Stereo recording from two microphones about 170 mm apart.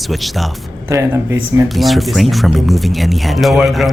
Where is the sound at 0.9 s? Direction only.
15° right (ahead or behind).